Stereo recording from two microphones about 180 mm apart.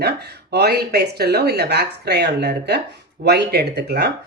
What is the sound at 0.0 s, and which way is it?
Speech, 65° right (ahead or behind).